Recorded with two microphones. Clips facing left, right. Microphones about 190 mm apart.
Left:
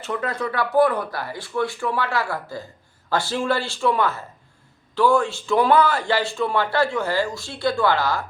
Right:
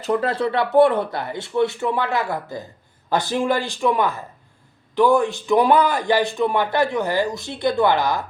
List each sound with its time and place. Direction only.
0.0 s a man's voice: 35° right (ahead or behind); by 8.2 s 20° right (ahead or behind)